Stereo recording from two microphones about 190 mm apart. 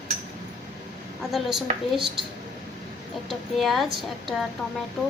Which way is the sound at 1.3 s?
Centre (ahead or behind).